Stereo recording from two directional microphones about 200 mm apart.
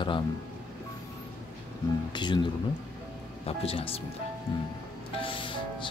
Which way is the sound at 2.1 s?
20° left (ahead or behind).